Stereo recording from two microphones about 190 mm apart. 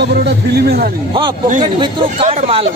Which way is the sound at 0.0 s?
55° right (ahead or behind).